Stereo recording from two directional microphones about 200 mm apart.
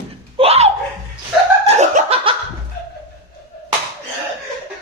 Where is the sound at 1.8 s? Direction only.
30° right (ahead or behind).